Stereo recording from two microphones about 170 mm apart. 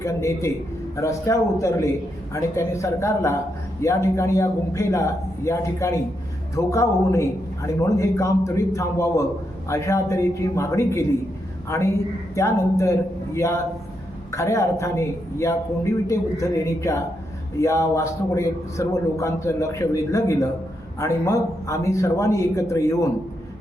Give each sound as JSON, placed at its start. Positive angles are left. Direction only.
{"t": 0.0, "sound": "a man's voice", "side_deg": 15}